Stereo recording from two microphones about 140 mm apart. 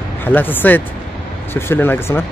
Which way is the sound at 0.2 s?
15° left (ahead or behind).